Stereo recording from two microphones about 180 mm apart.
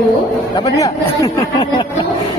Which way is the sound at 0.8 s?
20° left (ahead or behind).